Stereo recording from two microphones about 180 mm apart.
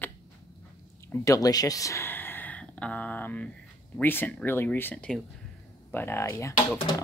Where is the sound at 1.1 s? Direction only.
20° left (ahead or behind).